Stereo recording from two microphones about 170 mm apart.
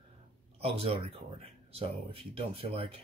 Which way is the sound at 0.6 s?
35° right (ahead or behind).